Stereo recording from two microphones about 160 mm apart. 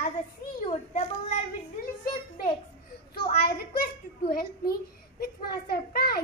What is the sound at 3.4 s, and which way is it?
A child's voice, 75° left (ahead or behind).